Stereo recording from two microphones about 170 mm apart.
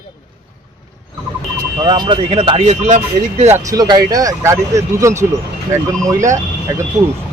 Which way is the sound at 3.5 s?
20° right (ahead or behind).